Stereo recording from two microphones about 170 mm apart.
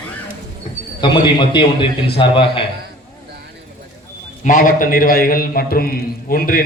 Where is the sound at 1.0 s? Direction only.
30° left (ahead or behind).